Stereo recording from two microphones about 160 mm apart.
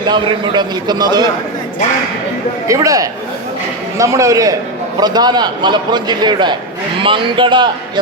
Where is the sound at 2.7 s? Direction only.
20° right (ahead or behind).